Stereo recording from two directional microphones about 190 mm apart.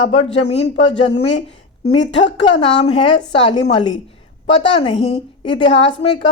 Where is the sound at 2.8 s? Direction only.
30° left (ahead or behind).